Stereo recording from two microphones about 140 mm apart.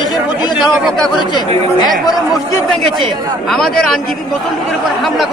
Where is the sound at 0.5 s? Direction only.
Centre (ahead or behind).